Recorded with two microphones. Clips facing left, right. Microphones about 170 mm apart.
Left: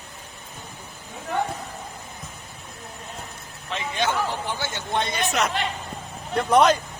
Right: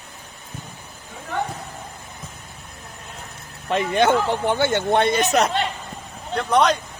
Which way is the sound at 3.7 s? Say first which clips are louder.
Right 8 dB; 55° right (ahead or behind).